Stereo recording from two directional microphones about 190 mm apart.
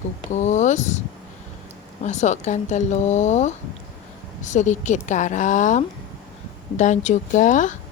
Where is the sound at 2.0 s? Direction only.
40° left (ahead or behind).